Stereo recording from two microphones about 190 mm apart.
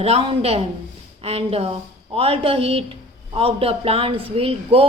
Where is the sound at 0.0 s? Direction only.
30° right (ahead or behind).